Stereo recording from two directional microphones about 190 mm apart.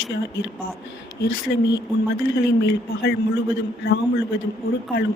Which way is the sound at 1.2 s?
65° left (ahead or behind).